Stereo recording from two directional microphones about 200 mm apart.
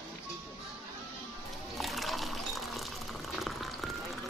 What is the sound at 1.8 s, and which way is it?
Water, centre (ahead or behind).